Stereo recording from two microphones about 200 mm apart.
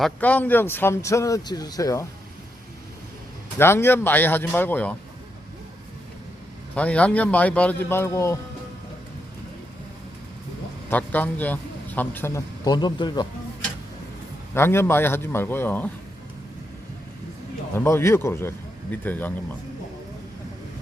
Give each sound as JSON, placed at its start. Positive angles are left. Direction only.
{"t": 0.0, "sound": "speech", "side_deg": 10}
{"t": 3.6, "sound": "speech", "side_deg": 10}
{"t": 6.7, "sound": "speech", "side_deg": 5}
{"t": 10.8, "sound": "a man's voice", "side_deg": 10}
{"t": 14.5, "sound": "speech", "side_deg": 10}
{"t": 17.7, "sound": "speech", "side_deg": 15}